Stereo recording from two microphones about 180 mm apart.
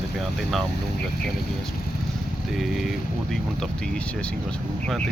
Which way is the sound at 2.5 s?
Centre (ahead or behind).